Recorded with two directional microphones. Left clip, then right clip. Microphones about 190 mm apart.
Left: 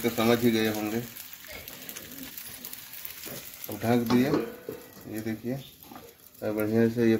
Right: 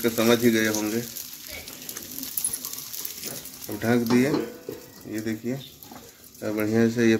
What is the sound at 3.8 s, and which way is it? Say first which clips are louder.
Speech: right 3 dB; 5° left (ahead or behind).